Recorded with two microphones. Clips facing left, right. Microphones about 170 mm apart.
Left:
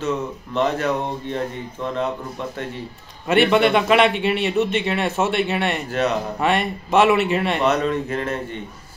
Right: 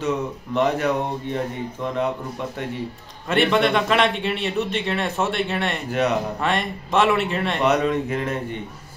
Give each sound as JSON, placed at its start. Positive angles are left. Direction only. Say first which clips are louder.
{"t": 0.6, "sound": "speech", "louder": "even", "side_deg": -15}
{"t": 3.3, "sound": "a man's voice", "louder": "left 3 dB", "side_deg": 5}
{"t": 5.9, "sound": "speech", "louder": "right 2 dB", "side_deg": -15}
{"t": 6.4, "sound": "a man's voice", "louder": "left 3 dB", "side_deg": 5}
{"t": 7.6, "sound": "speech", "louder": "even", "side_deg": -15}